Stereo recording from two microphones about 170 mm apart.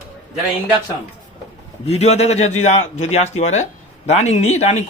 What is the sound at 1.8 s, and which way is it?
Speech, 40° left (ahead or behind).